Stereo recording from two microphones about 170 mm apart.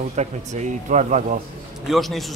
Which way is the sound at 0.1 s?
45° right (ahead or behind).